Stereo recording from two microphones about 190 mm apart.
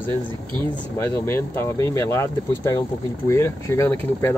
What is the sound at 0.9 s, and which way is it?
Speech, 15° left (ahead or behind).